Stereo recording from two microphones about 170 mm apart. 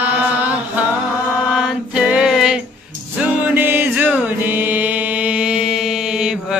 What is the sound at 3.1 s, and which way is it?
Music, 10° right (ahead or behind).